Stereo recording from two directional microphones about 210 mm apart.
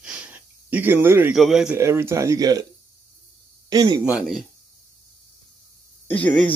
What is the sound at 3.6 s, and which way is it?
Speech, 20° right (ahead or behind).